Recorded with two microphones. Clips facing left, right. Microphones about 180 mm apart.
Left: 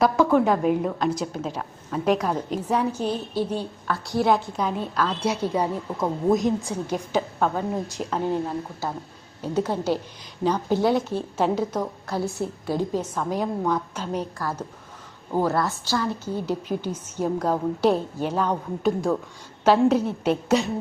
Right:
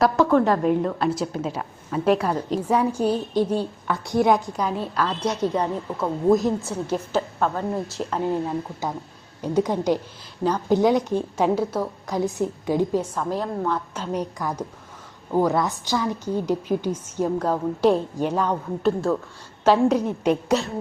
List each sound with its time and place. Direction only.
0.0 s a woman's voice: centre (ahead or behind); by 4.2 s 20° right (ahead or behind)
4.2 s a woman's voice: centre (ahead or behind)
8.8 s a woman's voice: 15° right (ahead or behind)
10.4 s a woman's voice: 10° left (ahead or behind)
10.8 s a woman's voice: 15° right (ahead or behind)
13.1 s a woman's voice: centre (ahead or behind)
14.2 s a woman's voice: 15° right (ahead or behind)
17.2 s a woman's voice: 10° left (ahead or behind)